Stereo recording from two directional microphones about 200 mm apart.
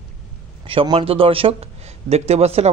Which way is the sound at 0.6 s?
25° right (ahead or behind).